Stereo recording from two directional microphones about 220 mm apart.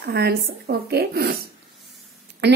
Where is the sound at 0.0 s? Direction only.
45° right (ahead or behind).